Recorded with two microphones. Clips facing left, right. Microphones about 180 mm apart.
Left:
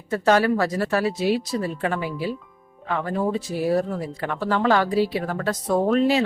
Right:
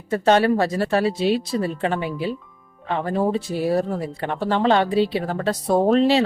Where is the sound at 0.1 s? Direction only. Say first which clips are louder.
Right 2 dB; 25° right (ahead or behind).